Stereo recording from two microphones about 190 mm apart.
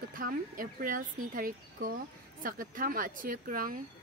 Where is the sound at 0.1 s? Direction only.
45° right (ahead or behind).